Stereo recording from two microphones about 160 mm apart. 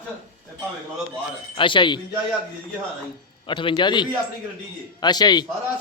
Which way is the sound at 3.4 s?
30° left (ahead or behind).